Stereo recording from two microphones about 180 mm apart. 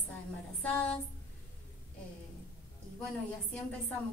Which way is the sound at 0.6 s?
10° left (ahead or behind).